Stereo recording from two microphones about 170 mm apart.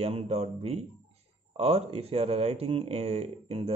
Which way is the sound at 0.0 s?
35° right (ahead or behind).